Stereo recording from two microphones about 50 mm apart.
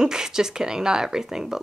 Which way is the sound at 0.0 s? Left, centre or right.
Centre.